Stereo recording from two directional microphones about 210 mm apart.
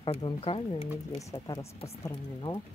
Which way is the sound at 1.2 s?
15° left (ahead or behind).